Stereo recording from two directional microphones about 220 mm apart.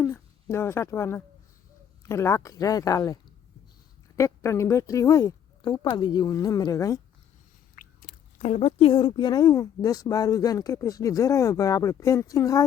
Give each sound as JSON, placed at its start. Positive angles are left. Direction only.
{"t": 0.0, "sound": "speech", "side_deg": 10}
{"t": 4.2, "sound": "speech", "side_deg": 15}
{"t": 7.8, "sound": "biting", "side_deg": 35}
{"t": 8.4, "sound": "speech", "side_deg": 30}